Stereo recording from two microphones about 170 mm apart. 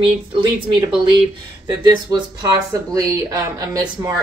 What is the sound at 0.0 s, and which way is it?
Speech, 30° right (ahead or behind).